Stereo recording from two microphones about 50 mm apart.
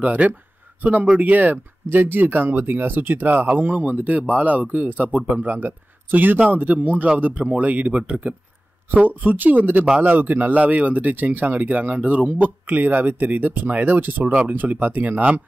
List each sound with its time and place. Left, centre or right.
0.0 s speech: right